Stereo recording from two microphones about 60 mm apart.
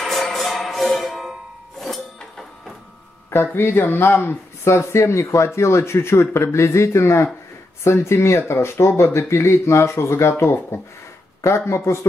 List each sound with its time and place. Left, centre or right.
0.0 s music: centre
1.8 s chink: centre
3.3 s speech: left